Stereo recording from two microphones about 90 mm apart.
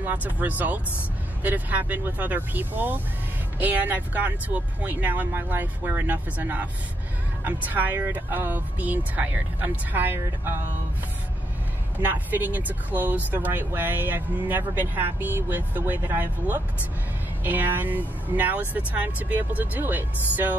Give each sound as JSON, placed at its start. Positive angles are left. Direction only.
{"t": 0.0, "sound": "speech", "side_deg": -20}
{"t": 12.0, "sound": "speech", "side_deg": -20}